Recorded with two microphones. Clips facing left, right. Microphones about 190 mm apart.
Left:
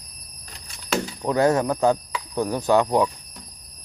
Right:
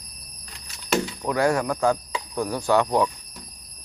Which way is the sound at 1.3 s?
20° left (ahead or behind).